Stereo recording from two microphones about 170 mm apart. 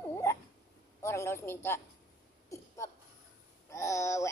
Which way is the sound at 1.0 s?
15° left (ahead or behind).